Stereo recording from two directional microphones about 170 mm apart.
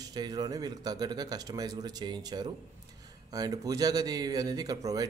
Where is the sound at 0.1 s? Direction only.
25° right (ahead or behind).